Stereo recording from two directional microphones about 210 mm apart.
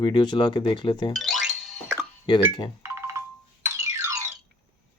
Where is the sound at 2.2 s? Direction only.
20° left (ahead or behind).